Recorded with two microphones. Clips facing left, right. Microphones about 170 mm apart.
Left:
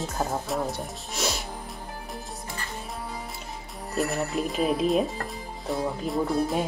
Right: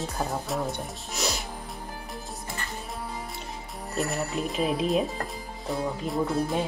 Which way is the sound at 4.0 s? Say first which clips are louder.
Left 2 dB; centre (ahead or behind).